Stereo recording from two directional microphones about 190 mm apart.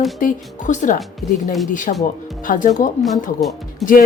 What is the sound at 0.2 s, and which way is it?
Speech, 45° left (ahead or behind).